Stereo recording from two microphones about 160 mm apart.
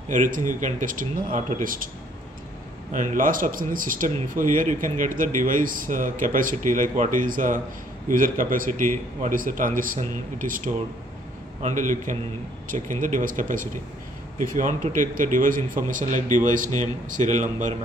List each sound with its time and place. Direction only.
0.1 s speech: 55° right (ahead or behind)
2.9 s speech: 55° right (ahead or behind)